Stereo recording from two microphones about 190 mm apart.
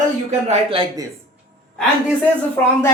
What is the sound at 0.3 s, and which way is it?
Speech, 30° right (ahead or behind).